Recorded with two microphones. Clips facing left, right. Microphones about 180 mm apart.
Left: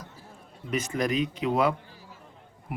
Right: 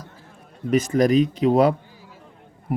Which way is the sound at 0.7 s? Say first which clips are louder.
Right 10 dB; 40° right (ahead or behind).